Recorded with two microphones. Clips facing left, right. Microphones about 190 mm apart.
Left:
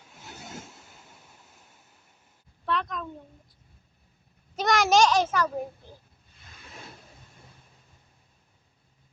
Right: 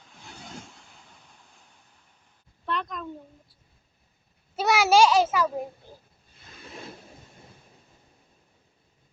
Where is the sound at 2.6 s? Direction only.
Centre (ahead or behind).